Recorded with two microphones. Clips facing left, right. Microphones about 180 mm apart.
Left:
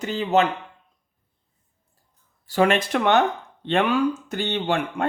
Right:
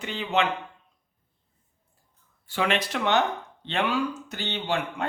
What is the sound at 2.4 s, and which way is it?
Speech, 45° left (ahead or behind).